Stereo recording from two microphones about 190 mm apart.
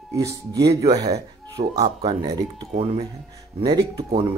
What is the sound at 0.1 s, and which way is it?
Speech, 15° right (ahead or behind).